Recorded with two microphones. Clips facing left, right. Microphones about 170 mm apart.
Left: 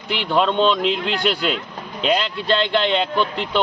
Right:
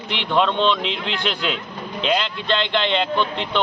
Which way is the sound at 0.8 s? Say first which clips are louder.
Left 5 dB; 50° left (ahead or behind).